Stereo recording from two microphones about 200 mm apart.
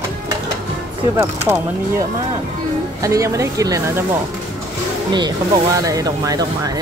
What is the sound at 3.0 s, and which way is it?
Speech, 15° right (ahead or behind).